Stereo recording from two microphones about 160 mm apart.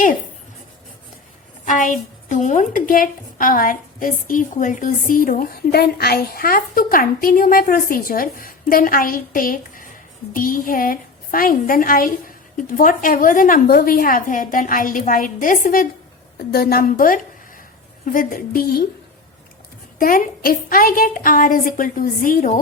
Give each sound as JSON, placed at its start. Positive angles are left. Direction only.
{"t": 1.6, "sound": "a woman's voice", "side_deg": 55}
{"t": 16.5, "sound": "a woman's voice", "side_deg": 75}
{"t": 20.0, "sound": "a woman's voice", "side_deg": 60}